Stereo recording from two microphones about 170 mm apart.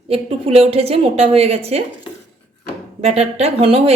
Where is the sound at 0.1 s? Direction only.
35° right (ahead or behind).